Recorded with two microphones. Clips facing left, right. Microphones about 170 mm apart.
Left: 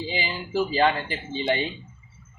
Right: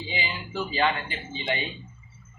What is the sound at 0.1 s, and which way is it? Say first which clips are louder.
Speech: left 2 dB; 35° left (ahead or behind).